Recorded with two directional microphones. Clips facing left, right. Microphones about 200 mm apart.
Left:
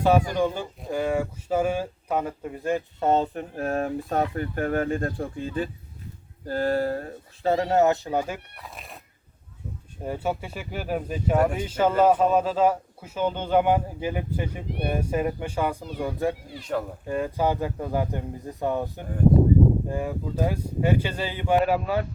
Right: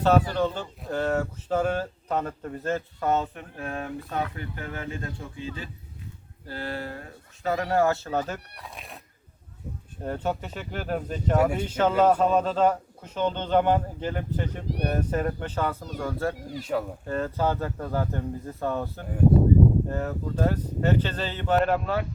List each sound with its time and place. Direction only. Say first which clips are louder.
0.0 s a man's voice: left 1 dB; 10° left (ahead or behind)
3.0 s speech: left 4 dB; 30° left (ahead or behind)
3.5 s speech: left 7 dB; 45° left (ahead or behind)
7.5 s a man's voice: left 3 dB; 25° left (ahead or behind)
8.5 s speech: even; centre (ahead or behind)
10.0 s a man's voice: left 1 dB; 10° left (ahead or behind)
16.7 s speech: even; centre (ahead or behind)
17.1 s a man's voice: left 2 dB; 15° left (ahead or behind)